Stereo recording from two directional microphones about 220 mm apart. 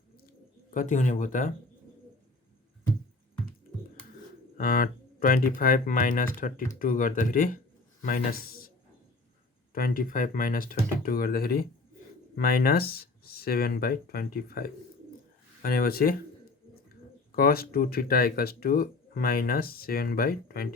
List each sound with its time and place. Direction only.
0.3 s bird: 35° left (ahead or behind)
4.5 s a man's voice: 40° left (ahead or behind)
9.7 s speech: 40° left (ahead or behind)
17.3 s speech: 40° left (ahead or behind)